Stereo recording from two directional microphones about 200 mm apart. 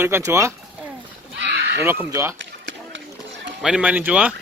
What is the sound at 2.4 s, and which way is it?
Run, 65° right (ahead or behind).